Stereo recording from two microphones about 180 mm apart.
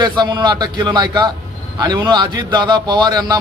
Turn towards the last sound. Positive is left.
turn(degrees=-20)  # may be behind; listen again after turning